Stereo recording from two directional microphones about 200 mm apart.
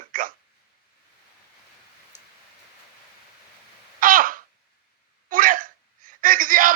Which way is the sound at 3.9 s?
45° right (ahead or behind).